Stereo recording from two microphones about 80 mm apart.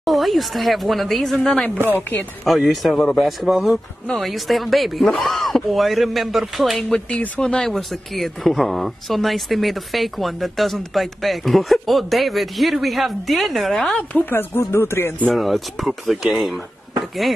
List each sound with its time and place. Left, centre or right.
0.0 s speech: centre
2.0 s speech: left
2.4 s speech: centre
7.1 s speech: centre
14.1 s speech: left
15.3 s speech: centre